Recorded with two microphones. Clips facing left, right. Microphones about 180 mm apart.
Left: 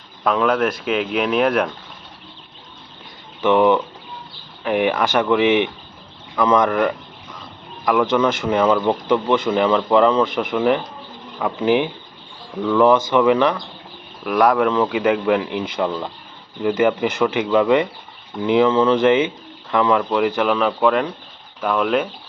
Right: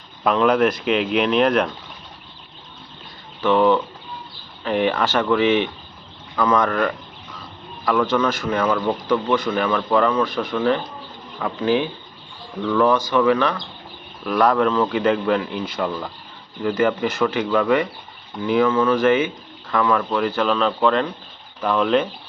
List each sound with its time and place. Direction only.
0.3 s speech: centre (ahead or behind)
3.4 s speech: 15° left (ahead or behind)